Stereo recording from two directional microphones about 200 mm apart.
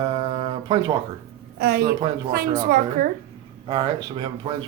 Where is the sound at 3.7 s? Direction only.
20° right (ahead or behind).